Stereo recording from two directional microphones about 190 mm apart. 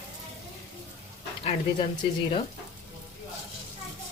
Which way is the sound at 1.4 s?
30° left (ahead or behind).